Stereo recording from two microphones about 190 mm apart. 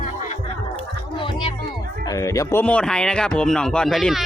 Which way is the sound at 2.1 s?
15° left (ahead or behind).